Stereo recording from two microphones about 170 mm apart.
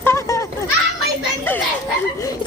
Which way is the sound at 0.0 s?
15° left (ahead or behind).